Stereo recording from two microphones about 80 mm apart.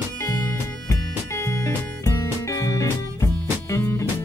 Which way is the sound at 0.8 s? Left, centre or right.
Left.